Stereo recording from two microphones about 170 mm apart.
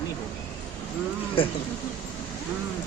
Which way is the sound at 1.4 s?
30° left (ahead or behind).